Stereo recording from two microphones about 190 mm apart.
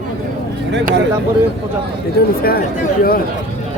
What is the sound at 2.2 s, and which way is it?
Speech, 50° left (ahead or behind).